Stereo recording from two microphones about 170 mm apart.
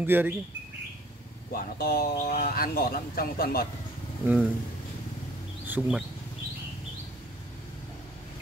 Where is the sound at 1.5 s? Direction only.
60° left (ahead or behind).